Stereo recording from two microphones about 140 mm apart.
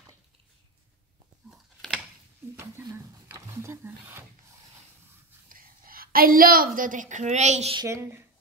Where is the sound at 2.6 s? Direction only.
20° right (ahead or behind).